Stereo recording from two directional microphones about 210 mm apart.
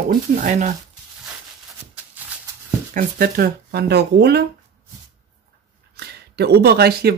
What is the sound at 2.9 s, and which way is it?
Speech, 45° right (ahead or behind).